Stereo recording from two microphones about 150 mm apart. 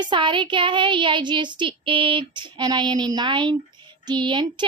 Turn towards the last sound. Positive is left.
turn(degrees=-30)  # may be behind; listen again after turning